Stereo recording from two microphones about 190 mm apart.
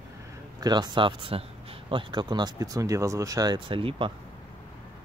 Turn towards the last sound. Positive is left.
turn(degrees=-30)  # may be behind; listen again after turning